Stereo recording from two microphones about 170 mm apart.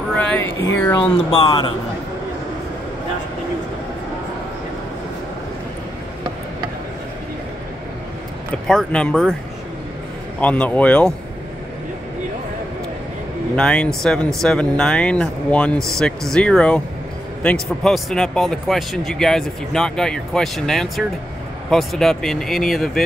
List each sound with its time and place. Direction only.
0.1 s a sound: 5° left (ahead or behind)
0.7 s speech: 10° left (ahead or behind)
1.4 s a man's voice: 25° left (ahead or behind)
8.6 s speech: 5° left (ahead or behind)
10.4 s speech: 10° left (ahead or behind)
13.6 s speech: 5° left (ahead or behind)